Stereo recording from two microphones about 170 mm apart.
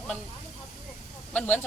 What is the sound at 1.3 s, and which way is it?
Speech, 10° left (ahead or behind).